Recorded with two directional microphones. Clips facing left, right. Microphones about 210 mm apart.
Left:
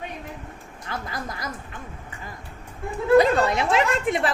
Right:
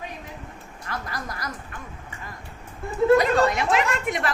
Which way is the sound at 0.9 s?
25° left (ahead or behind).